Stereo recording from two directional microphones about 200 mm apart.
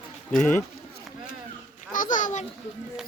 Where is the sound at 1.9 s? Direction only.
40° left (ahead or behind).